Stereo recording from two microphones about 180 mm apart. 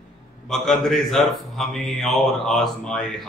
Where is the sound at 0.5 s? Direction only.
Centre (ahead or behind).